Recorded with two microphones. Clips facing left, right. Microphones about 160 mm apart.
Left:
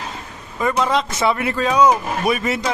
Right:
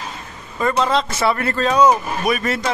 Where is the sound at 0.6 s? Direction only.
10° left (ahead or behind).